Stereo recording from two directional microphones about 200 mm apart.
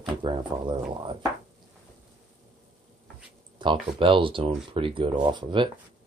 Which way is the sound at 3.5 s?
25° right (ahead or behind).